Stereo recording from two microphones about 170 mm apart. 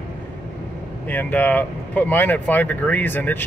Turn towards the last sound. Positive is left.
turn(degrees=10)  # may be behind; listen again after turning